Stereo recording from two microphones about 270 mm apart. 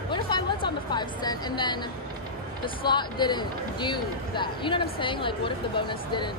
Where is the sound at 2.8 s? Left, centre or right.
Centre.